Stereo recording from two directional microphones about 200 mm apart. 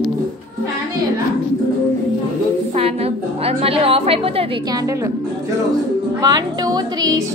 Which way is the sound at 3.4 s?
30° right (ahead or behind).